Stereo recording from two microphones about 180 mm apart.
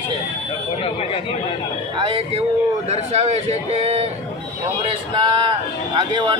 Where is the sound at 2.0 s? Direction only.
35° right (ahead or behind).